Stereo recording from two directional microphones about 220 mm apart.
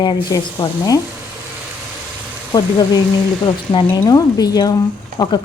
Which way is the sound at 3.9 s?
15° left (ahead or behind).